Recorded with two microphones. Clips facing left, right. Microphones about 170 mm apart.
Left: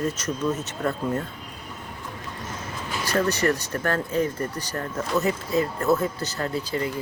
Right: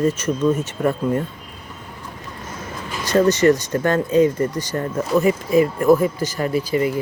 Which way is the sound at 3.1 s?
20° right (ahead or behind).